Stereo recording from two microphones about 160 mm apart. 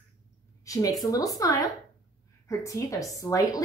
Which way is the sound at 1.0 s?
20° left (ahead or behind).